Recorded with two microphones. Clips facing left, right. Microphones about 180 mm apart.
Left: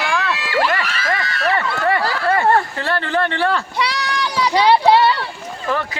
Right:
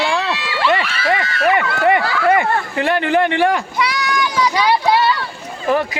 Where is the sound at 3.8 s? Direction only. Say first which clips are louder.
Right 2 dB; 30° left (ahead or behind).